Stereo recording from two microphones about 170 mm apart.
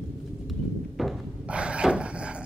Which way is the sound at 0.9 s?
5° right (ahead or behind).